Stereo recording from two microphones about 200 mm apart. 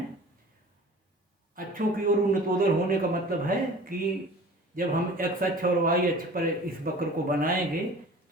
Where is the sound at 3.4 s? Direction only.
45° right (ahead or behind).